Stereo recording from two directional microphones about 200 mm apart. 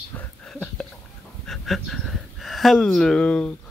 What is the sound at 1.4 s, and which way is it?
Speech, centre (ahead or behind).